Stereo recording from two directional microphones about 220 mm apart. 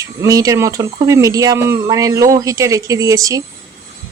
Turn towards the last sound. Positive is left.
turn(degrees=-15)  # may be behind; listen again after turning